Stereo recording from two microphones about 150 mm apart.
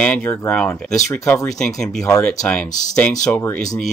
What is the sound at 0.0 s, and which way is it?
Speech, 5° left (ahead or behind).